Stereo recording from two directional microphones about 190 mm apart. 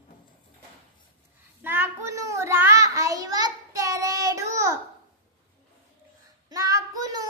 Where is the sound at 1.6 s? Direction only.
10° right (ahead or behind).